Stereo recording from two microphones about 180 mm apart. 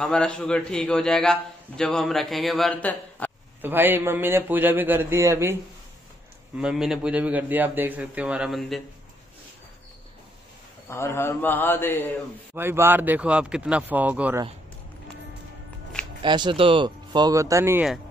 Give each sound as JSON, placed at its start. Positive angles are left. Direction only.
{"t": 0.0, "sound": "a man's voice", "side_deg": 5}
{"t": 3.6, "sound": "a man's voice", "side_deg": -10}
{"t": 10.9, "sound": "a man's voice", "side_deg": 15}
{"t": 12.5, "sound": "a man's voice", "side_deg": -15}
{"t": 16.2, "sound": "speech", "side_deg": -25}